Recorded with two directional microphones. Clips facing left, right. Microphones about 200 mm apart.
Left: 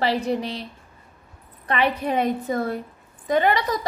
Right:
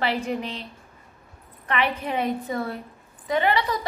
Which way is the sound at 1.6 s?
35° left (ahead or behind).